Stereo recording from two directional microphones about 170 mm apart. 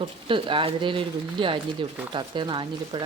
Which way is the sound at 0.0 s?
30° right (ahead or behind).